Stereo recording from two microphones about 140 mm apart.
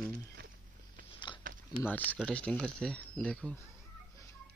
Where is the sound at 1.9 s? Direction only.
10° left (ahead or behind).